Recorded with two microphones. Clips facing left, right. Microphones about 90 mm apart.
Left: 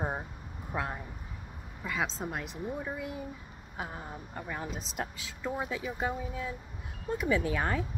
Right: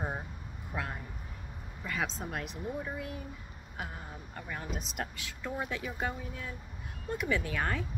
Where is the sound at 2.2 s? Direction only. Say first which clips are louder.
Left 2 dB; 20° left (ahead or behind).